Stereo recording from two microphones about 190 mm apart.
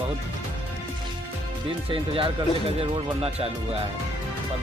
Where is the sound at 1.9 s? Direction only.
30° right (ahead or behind).